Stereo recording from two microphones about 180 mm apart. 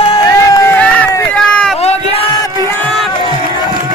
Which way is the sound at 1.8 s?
35° left (ahead or behind).